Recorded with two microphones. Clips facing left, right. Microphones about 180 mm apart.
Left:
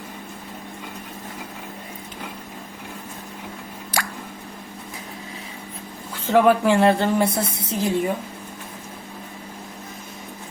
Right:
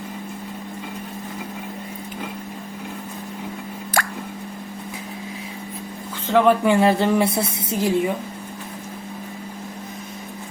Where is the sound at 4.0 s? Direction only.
55° right (ahead or behind).